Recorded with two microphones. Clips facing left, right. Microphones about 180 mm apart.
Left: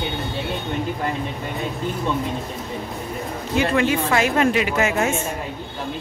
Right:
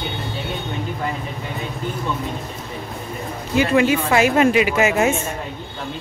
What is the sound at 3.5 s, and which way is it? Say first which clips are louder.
A woman's voice: right 3 dB; 5° right (ahead or behind).